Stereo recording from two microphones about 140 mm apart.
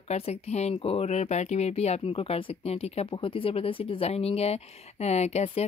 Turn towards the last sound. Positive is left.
turn(degrees=50)  # may be behind; listen again after turning